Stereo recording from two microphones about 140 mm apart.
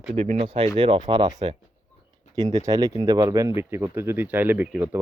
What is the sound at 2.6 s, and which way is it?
Speech, 25° right (ahead or behind).